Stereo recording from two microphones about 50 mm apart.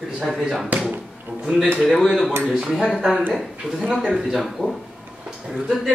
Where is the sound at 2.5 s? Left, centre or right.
Centre.